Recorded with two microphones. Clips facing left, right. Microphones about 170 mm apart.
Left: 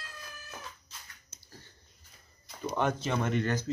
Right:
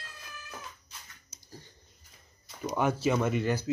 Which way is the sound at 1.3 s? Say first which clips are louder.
Right 6 dB; 15° right (ahead or behind).